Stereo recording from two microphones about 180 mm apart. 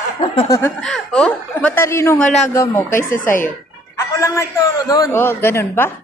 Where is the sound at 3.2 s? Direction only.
50° left (ahead or behind).